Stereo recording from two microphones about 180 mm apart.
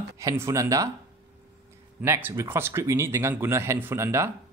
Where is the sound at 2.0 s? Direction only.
15° right (ahead or behind).